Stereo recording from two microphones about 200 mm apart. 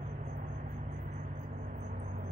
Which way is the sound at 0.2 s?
40° right (ahead or behind).